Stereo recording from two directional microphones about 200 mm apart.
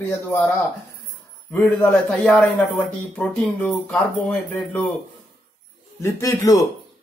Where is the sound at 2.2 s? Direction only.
5° left (ahead or behind).